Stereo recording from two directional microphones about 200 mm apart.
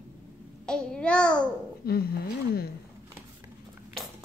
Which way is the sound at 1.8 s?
50° left (ahead or behind).